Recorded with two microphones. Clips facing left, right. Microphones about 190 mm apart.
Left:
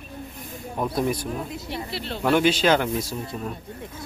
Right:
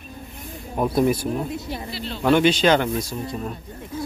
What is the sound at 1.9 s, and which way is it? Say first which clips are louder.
Speech: even; 65° left (ahead or behind).